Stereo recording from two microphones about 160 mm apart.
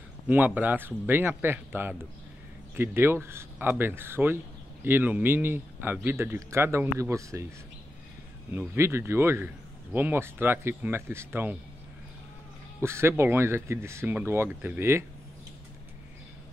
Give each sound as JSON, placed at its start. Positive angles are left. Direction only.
{"t": 0.3, "sound": "a man's voice", "side_deg": -10}
{"t": 8.5, "sound": "a man's voice", "side_deg": -15}
{"t": 12.8, "sound": "a man's voice", "side_deg": -15}